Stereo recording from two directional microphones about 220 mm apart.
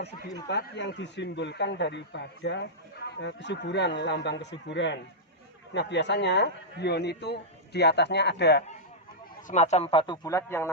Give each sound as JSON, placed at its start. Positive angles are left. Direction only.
{"t": 0.4, "sound": "a man's voice", "side_deg": 50}
{"t": 9.5, "sound": "a man's voice", "side_deg": 30}